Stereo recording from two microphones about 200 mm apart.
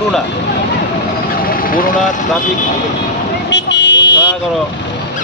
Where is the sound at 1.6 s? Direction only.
45° left (ahead or behind).